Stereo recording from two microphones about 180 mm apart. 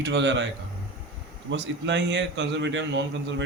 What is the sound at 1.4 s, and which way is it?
A man's voice, 75° right (ahead or behind).